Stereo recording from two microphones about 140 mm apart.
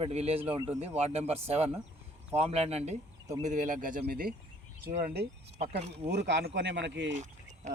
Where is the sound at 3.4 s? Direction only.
65° right (ahead or behind); by 4.4 s 90° right.